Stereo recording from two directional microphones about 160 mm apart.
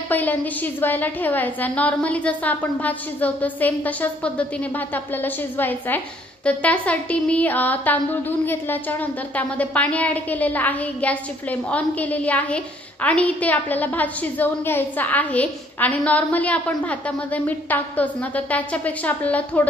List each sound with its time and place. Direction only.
0.1 s a woman's voice: 10° left (ahead or behind)